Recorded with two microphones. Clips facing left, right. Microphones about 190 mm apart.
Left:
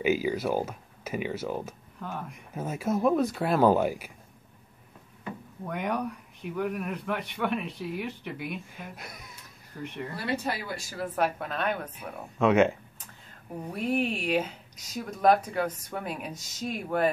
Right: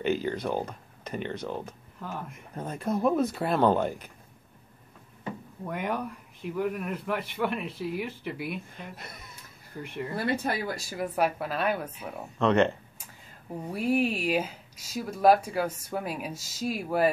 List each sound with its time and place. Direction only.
0.0 s speech: 5° left (ahead or behind)
5.7 s speech: centre (ahead or behind)
10.1 s speech: 55° right (ahead or behind)
11.0 s speech: 5° right (ahead or behind)
12.4 s speech: 5° left (ahead or behind)
13.7 s speech: 5° right (ahead or behind)